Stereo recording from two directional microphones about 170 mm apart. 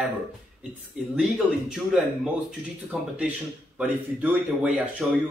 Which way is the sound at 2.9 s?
5° right (ahead or behind).